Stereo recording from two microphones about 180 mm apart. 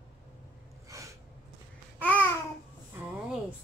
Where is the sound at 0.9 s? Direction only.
15° right (ahead or behind).